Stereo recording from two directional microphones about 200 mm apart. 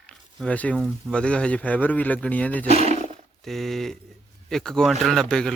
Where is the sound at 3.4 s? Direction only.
Centre (ahead or behind).